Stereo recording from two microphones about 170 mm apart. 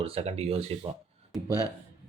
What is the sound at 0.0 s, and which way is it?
Speech, 35° right (ahead or behind).